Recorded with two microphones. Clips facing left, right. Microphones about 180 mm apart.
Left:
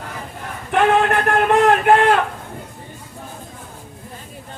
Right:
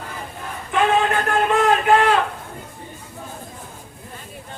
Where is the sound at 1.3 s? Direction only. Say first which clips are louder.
Left 4 dB; 60° left (ahead or behind).